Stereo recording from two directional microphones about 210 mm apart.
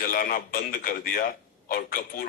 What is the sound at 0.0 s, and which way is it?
A man's voice, 45° left (ahead or behind).